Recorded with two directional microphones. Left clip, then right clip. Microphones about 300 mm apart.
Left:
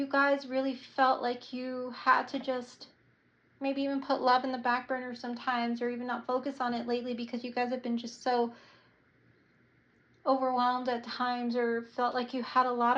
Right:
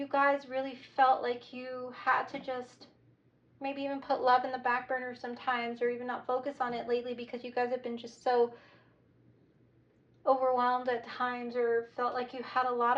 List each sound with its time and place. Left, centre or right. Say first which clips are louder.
0.1 s speech: even; centre
10.2 s speech: even; centre